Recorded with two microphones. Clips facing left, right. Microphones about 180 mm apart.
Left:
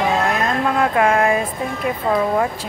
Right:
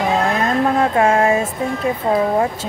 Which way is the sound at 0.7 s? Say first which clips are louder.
Even; 25° right (ahead or behind).